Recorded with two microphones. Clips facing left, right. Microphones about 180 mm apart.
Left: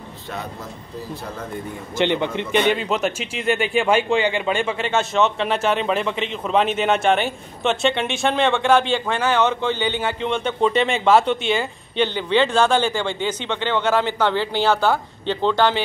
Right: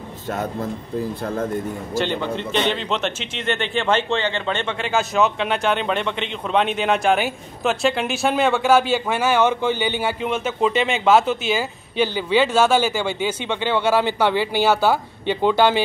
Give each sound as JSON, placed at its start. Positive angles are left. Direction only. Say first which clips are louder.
{"t": 0.3, "sound": "a man's voice", "louder": "right 7 dB", "side_deg": -45}
{"t": 2.5, "sound": "speech", "louder": "left 4 dB", "side_deg": 10}